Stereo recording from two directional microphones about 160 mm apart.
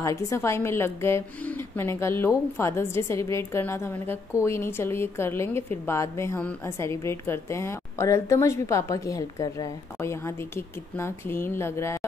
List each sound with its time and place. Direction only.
0.0 s a woman's voice: 20° left (ahead or behind)